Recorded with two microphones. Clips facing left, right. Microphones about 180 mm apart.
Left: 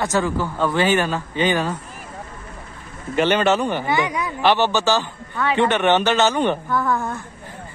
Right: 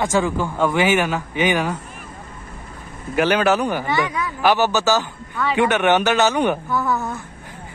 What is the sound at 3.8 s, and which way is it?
Speech, 15° left (ahead or behind).